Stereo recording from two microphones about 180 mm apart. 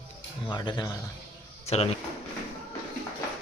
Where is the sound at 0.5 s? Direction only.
25° left (ahead or behind).